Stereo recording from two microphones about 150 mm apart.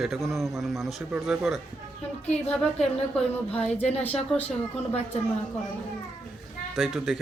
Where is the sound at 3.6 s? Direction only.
45° left (ahead or behind).